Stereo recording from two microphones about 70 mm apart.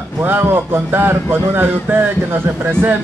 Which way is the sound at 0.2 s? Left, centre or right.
Right.